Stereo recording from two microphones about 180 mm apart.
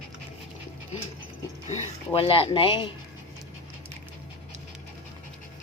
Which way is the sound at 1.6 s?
30° left (ahead or behind).